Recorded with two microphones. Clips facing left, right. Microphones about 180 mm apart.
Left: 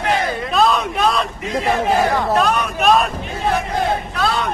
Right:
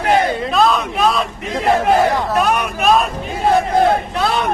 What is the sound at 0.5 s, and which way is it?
Speech, centre (ahead or behind).